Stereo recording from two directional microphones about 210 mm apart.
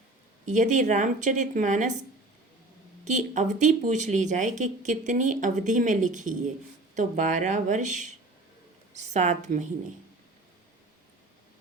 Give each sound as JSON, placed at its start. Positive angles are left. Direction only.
{"t": 0.4, "sound": "speech", "side_deg": -35}
{"t": 3.0, "sound": "a woman's voice", "side_deg": -35}